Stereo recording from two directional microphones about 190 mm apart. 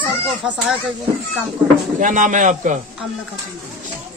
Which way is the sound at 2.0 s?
40° right (ahead or behind).